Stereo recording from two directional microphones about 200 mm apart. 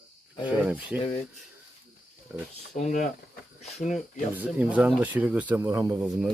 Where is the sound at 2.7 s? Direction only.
35° left (ahead or behind).